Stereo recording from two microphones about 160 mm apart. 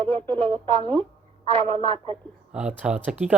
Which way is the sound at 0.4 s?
30° right (ahead or behind).